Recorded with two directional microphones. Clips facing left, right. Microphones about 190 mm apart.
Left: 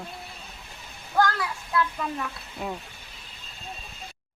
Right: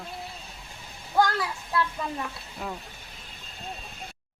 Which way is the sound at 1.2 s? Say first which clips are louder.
Even; 20° right (ahead or behind).